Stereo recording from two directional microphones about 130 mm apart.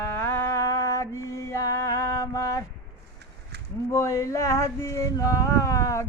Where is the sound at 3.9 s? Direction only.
20° left (ahead or behind).